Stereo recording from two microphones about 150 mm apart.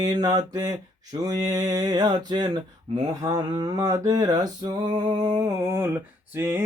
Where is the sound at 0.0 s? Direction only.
25° right (ahead or behind).